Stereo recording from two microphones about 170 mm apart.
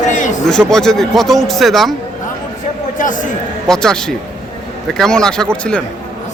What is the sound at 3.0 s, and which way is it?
Speech, 50° left (ahead or behind).